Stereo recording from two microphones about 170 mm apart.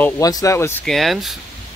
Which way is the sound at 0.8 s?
Centre (ahead or behind).